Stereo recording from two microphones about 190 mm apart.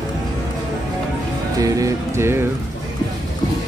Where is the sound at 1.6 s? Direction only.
20° right (ahead or behind).